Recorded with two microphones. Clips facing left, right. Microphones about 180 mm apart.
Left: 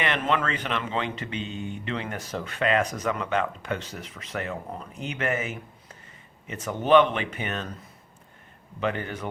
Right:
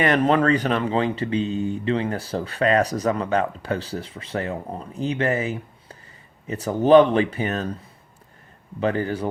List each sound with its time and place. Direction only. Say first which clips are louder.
0.0 s speech: right 8 dB; 40° right (ahead or behind)
8.8 s speech: right 6 dB; 35° right (ahead or behind)